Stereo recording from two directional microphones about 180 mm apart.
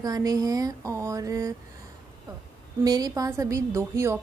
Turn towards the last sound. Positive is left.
turn(degrees=-15)  # may be behind; listen again after turning